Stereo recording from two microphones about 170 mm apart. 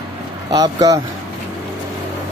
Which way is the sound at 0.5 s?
20° right (ahead or behind).